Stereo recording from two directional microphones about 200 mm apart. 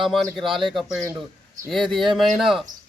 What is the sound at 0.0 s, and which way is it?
A man's voice, centre (ahead or behind).